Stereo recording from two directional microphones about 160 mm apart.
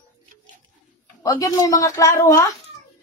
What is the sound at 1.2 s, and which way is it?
A woman's voice, 20° left (ahead or behind).